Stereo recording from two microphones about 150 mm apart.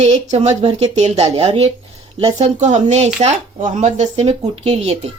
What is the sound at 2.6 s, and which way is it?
Speech, 50° right (ahead or behind).